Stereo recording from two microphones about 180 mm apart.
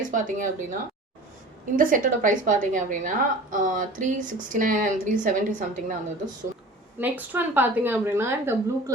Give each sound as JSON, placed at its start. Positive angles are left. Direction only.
{"t": 0.0, "sound": "a woman's voice", "side_deg": -45}
{"t": 7.0, "sound": "a woman's voice", "side_deg": -10}